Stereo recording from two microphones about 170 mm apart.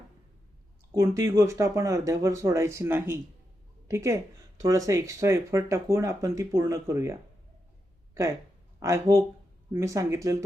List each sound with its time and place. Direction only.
0.9 s speech: 20° right (ahead or behind)